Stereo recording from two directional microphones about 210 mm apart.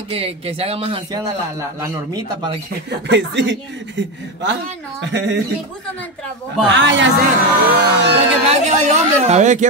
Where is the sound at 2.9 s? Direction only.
55° right (ahead or behind).